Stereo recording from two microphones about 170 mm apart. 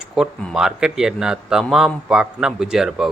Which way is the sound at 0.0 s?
Centre (ahead or behind).